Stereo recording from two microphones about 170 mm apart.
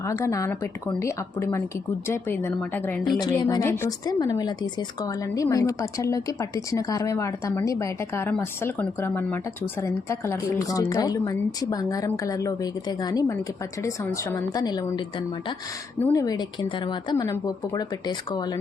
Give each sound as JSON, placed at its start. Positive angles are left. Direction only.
{"t": 0.0, "sound": "a woman's voice", "side_deg": 20}
{"t": 3.2, "sound": "a woman's voice", "side_deg": 25}
{"t": 16.0, "sound": "a woman's voice", "side_deg": 10}
{"t": 16.2, "sound": "a woman's voice", "side_deg": 25}